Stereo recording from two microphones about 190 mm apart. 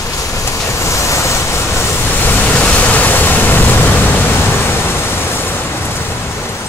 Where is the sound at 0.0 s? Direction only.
15° left (ahead or behind).